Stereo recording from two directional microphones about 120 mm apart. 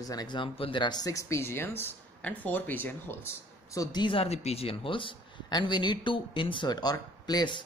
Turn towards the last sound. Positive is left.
turn(degrees=35)  # may be behind; listen again after turning